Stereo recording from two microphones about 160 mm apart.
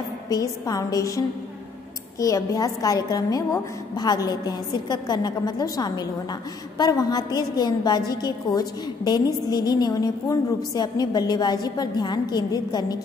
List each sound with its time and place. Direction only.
0.3 s a woman's voice: 20° left (ahead or behind)